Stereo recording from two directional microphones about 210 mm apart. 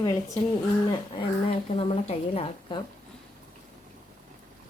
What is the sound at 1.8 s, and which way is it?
A woman's voice, 25° left (ahead or behind).